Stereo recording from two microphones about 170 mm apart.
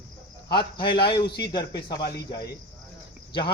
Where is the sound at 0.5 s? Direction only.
30° left (ahead or behind).